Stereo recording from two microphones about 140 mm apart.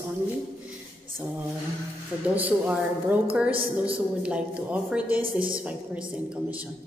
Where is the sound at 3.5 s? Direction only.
40° right (ahead or behind).